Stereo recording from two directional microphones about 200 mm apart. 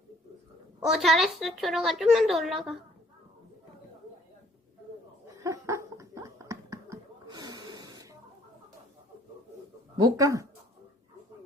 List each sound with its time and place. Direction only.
0.9 s a woman's voice: centre (ahead or behind)
5.4 s a sound: 15° right (ahead or behind)
10.0 s speech: 15° right (ahead or behind)